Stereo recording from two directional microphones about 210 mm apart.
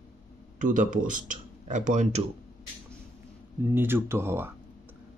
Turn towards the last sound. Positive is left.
turn(degrees=-10)  # may be behind; listen again after turning